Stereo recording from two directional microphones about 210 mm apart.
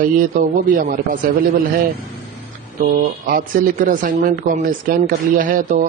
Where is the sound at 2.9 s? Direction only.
40° right (ahead or behind).